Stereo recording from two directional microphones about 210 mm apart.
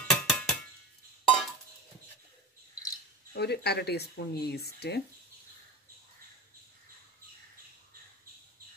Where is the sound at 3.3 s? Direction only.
50° left (ahead or behind).